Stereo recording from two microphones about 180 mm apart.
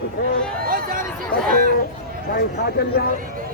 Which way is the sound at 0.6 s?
50° right (ahead or behind).